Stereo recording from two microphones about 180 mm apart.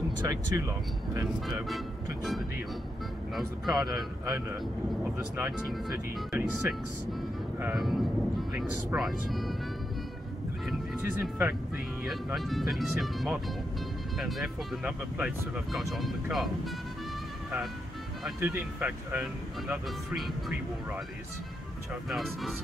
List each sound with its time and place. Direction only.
0.3 s speech: 20° right (ahead or behind)
3.3 s speech: centre (ahead or behind)
3.8 s speech: 20° right (ahead or behind)
5.0 s speech: 5° right (ahead or behind)
7.8 s speech: centre (ahead or behind)
10.7 s speech: 10° right (ahead or behind)
18.4 s speech: 10° right (ahead or behind)
22.1 s speech: centre (ahead or behind)